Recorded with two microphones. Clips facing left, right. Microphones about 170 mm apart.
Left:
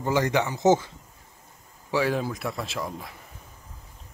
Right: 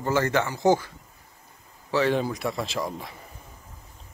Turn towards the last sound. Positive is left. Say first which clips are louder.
# right 3 dB
turn(degrees=0)  # may be behind; listen again after turning